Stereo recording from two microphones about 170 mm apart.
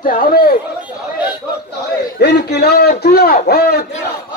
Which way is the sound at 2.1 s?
70° left (ahead or behind).